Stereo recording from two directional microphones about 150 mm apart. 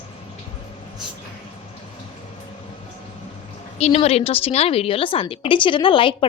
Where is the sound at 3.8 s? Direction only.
45° left (ahead or behind).